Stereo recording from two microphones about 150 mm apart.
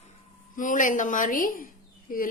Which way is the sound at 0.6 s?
60° left (ahead or behind).